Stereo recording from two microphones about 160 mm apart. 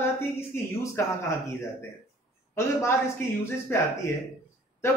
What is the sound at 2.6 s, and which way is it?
Speech, 20° left (ahead or behind).